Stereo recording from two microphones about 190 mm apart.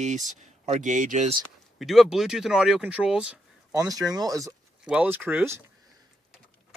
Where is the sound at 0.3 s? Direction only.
40° right (ahead or behind).